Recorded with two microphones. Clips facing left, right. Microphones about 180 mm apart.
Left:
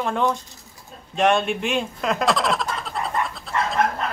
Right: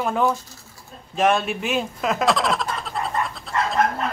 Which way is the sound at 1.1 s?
Centre (ahead or behind).